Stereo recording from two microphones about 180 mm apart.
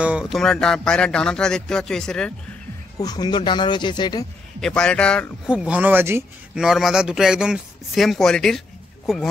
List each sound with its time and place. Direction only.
0.0 s a man's voice: 5° right (ahead or behind)
3.0 s speech: 20° left (ahead or behind)
4.6 s a man's voice: 5° left (ahead or behind)
5.5 s a man's voice: 5° right (ahead or behind)